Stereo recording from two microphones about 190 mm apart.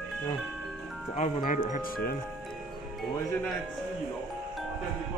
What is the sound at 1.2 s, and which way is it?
Speech, 45° left (ahead or behind).